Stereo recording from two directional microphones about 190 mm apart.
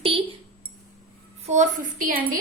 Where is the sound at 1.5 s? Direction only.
45° right (ahead or behind).